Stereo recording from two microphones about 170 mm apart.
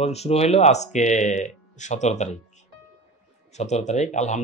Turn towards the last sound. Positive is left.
turn(degrees=45)  # may be behind; listen again after turning